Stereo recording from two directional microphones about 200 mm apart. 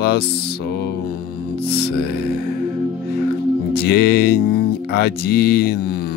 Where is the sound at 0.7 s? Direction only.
55° left (ahead or behind).